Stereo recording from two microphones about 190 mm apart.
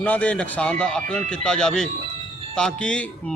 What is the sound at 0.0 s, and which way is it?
A man's voice, 5° left (ahead or behind).